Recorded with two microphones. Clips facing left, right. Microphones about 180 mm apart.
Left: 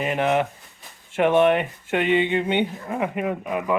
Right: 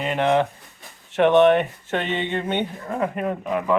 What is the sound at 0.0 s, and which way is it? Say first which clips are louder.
Speech: right 1 dB; 10° left (ahead or behind).